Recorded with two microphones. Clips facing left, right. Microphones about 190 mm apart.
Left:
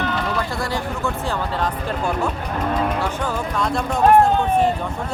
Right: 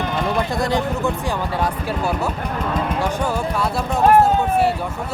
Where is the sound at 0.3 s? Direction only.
20° right (ahead or behind).